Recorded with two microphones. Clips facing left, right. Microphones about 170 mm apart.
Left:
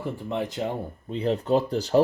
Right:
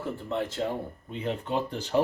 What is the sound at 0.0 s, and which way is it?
Speech, 15° left (ahead or behind).